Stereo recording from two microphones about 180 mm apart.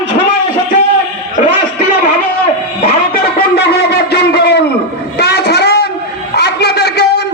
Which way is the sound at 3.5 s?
65° left (ahead or behind).